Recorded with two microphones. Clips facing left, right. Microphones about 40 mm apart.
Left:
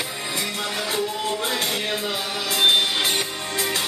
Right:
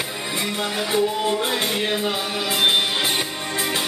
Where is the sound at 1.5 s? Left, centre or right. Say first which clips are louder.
Right 2 dB; centre.